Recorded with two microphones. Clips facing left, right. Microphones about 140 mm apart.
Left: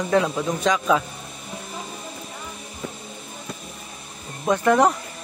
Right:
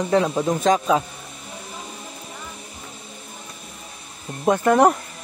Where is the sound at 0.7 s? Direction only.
45° right (ahead or behind).